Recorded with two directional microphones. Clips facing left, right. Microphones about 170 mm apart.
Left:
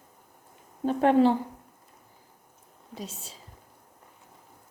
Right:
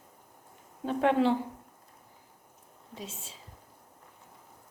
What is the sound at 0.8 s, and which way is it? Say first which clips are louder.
Speech: left 5 dB; 40° left (ahead or behind).